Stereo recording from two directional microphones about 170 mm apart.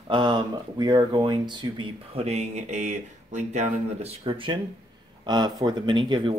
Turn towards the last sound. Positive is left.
turn(degrees=-25)  # may be behind; listen again after turning